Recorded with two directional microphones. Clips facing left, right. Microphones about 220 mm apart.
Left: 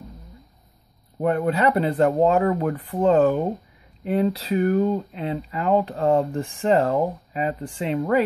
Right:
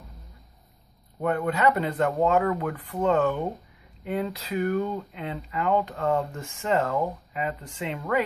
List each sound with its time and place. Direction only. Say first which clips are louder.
1.2 s speech: left 3 dB; 30° left (ahead or behind)